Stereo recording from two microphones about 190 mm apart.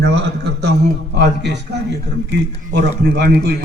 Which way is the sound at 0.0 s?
65° right (ahead or behind).